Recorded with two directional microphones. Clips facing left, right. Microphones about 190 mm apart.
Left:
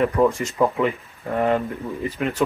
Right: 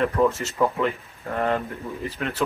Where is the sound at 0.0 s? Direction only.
15° left (ahead or behind).